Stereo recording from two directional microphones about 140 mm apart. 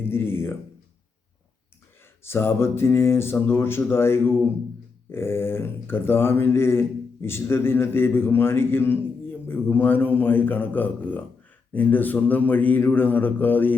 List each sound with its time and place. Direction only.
0.0 s speech: 15° left (ahead or behind)
2.2 s speech: 15° left (ahead or behind)